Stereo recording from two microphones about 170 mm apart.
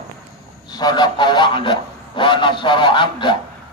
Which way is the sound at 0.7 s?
25° left (ahead or behind).